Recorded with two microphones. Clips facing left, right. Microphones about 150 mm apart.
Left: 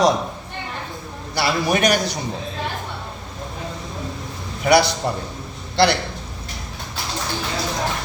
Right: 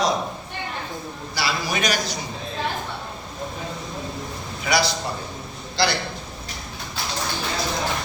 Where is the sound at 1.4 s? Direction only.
55° left (ahead or behind).